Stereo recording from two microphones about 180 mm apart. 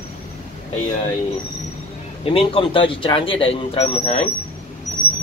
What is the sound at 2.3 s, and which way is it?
Speech, 30° left (ahead or behind).